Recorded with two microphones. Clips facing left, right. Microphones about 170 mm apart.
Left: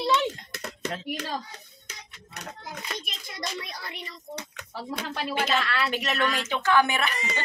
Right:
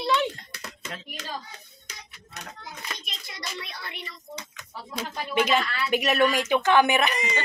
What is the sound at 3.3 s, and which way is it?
Speech, 40° left (ahead or behind).